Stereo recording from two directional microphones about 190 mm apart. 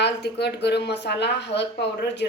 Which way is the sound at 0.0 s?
60° left (ahead or behind).